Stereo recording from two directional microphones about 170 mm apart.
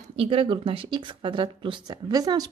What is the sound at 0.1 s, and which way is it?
Speech, 35° right (ahead or behind).